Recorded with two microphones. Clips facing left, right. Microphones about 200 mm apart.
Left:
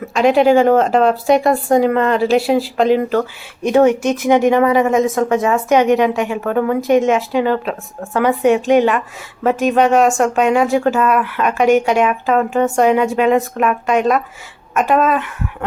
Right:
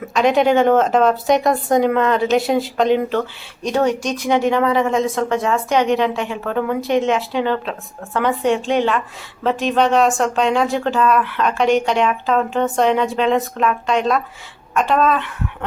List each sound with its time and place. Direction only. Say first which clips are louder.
0.2 s speech: left 3 dB; 5° left (ahead or behind)
3.1 s speech: left 4 dB; 45° left (ahead or behind)
3.7 s speech: left 6 dB; 10° left (ahead or behind)